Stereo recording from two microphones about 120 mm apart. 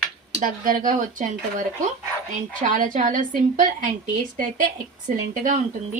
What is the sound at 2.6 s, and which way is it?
A woman's voice, 90° right.